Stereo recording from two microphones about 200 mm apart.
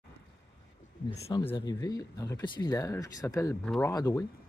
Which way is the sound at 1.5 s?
20° left (ahead or behind).